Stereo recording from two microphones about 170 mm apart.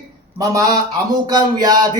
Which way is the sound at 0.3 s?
20° right (ahead or behind).